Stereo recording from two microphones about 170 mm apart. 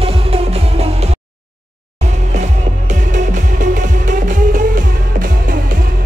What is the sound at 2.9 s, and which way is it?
Music, 45° right (ahead or behind).